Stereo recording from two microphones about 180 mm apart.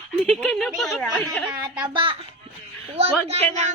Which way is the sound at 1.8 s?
25° right (ahead or behind).